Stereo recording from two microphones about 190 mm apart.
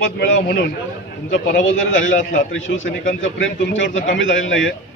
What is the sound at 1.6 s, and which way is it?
A man's voice, 90° left.